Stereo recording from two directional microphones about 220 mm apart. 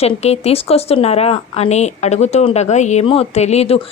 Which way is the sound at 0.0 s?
30° left (ahead or behind).